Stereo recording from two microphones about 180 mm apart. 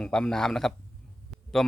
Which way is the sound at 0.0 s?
5° left (ahead or behind).